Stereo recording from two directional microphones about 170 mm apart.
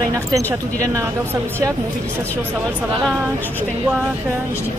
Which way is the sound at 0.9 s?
15° right (ahead or behind).